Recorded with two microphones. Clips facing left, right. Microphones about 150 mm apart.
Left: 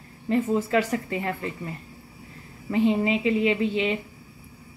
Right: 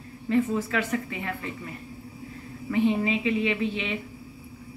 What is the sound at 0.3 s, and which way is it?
A woman's voice, 30° left (ahead or behind).